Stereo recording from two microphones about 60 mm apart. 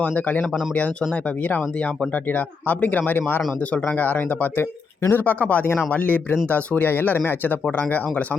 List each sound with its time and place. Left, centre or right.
0.0 s speech: left
2.6 s speech: left